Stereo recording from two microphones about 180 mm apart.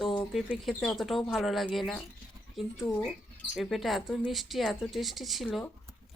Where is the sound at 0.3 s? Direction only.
Centre (ahead or behind).